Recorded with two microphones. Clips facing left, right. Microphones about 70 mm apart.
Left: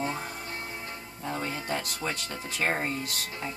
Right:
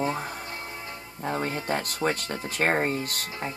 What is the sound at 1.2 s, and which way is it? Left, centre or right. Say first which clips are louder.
Speech: right 4 dB; right.